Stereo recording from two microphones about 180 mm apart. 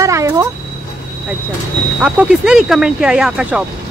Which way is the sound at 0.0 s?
15° right (ahead or behind).